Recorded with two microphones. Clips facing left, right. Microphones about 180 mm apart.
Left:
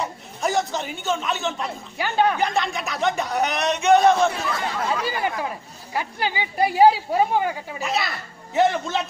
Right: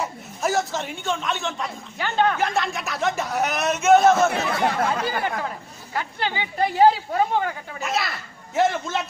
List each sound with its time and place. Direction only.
0.0 s a man's voice: centre (ahead or behind)
2.0 s a woman's voice: 10° left (ahead or behind)
2.3 s a man's voice: centre (ahead or behind)
4.3 s speech: 60° right (ahead or behind)
5.9 s a woman's voice: 10° left (ahead or behind)
7.8 s a man's voice: centre (ahead or behind)